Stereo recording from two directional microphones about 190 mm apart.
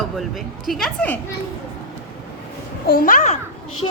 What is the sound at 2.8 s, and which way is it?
Speech, 50° left (ahead or behind).